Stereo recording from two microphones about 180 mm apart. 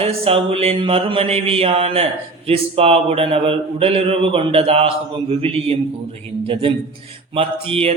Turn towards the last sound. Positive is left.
turn(degrees=-30)  # may be behind; listen again after turning